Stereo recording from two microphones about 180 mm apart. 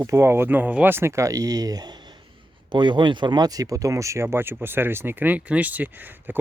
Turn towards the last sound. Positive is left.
turn(degrees=-10)  # may be behind; listen again after turning